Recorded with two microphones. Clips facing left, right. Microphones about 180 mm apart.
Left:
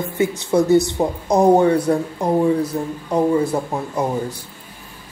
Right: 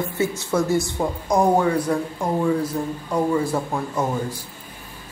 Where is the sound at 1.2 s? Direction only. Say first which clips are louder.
Left 5 dB; 40° left (ahead or behind).